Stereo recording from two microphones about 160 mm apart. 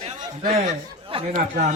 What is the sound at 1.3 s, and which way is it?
Speech, 50° right (ahead or behind).